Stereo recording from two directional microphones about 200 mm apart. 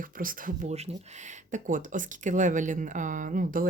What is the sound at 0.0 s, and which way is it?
Speech, 45° right (ahead or behind).